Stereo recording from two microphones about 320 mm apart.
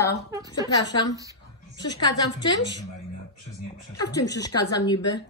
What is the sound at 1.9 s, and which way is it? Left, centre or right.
Speech, centre.